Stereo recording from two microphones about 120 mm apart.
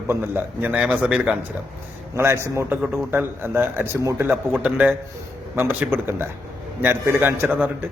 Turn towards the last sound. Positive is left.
turn(degrees=-15)  # may be behind; listen again after turning